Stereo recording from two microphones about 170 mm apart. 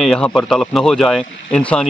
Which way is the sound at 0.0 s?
Centre (ahead or behind).